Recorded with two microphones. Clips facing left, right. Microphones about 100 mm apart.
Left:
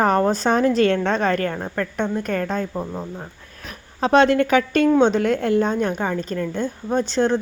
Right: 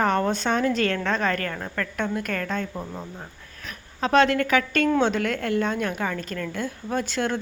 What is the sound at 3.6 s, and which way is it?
A woman's voice, 35° left (ahead or behind).